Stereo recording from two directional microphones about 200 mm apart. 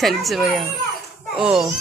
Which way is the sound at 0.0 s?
Centre (ahead or behind).